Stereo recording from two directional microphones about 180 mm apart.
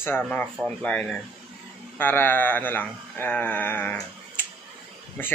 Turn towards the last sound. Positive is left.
turn(degrees=10)  # may be behind; listen again after turning